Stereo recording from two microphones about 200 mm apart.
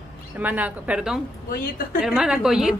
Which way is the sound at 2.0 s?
5° right (ahead or behind).